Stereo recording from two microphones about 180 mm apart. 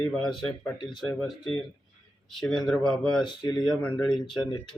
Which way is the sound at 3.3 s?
25° left (ahead or behind).